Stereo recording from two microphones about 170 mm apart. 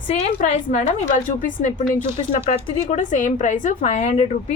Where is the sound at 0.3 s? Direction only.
45° left (ahead or behind).